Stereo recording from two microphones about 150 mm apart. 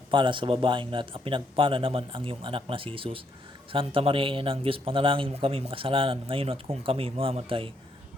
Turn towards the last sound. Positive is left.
turn(degrees=-35)  # may be behind; listen again after turning